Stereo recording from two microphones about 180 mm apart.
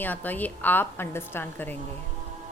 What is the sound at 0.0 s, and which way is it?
A woman's voice, 10° left (ahead or behind).